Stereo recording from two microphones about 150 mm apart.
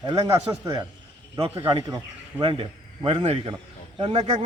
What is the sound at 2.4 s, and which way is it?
A man's voice, 35° right (ahead or behind).